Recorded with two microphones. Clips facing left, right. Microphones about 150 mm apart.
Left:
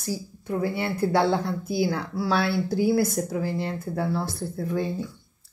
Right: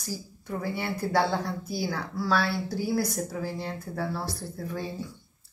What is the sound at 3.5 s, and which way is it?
Speech, 5° right (ahead or behind).